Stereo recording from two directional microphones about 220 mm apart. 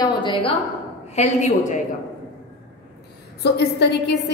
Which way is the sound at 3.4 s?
50° left (ahead or behind).